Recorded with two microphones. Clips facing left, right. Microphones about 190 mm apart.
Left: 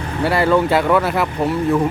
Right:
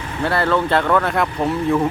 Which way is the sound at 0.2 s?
10° left (ahead or behind).